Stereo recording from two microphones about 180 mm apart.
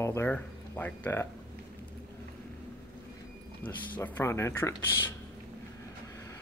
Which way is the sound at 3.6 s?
25° left (ahead or behind).